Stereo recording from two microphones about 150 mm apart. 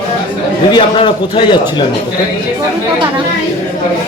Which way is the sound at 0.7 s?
35° left (ahead or behind).